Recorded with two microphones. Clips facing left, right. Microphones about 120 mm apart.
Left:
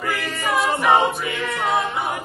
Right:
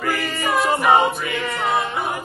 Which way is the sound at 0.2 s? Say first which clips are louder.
Right 1 dB; centre (ahead or behind).